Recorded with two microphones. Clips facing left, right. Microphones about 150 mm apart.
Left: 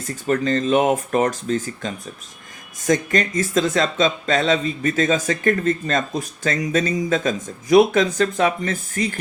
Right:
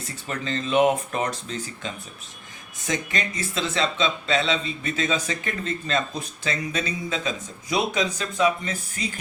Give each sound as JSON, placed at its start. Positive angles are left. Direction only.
{"t": 0.3, "sound": "speech", "side_deg": 45}